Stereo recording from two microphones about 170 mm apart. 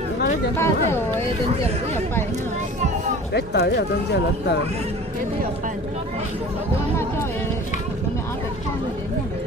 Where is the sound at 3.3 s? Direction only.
80° left.